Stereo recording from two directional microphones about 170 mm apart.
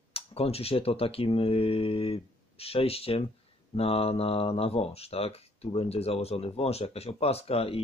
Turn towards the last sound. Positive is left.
turn(degrees=35)  # may be behind; listen again after turning